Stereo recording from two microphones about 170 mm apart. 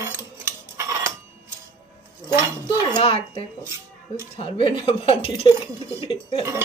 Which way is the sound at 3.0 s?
30° left (ahead or behind).